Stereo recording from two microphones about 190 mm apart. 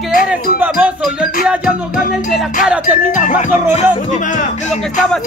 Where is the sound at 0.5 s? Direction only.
10° right (ahead or behind).